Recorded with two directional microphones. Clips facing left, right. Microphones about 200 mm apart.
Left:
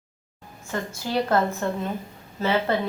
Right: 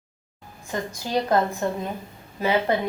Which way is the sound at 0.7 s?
15° right (ahead or behind).